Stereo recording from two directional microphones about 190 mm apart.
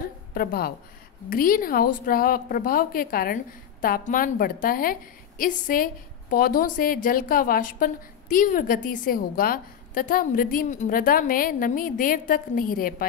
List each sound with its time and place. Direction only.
0.3 s a woman's voice: 50° left (ahead or behind)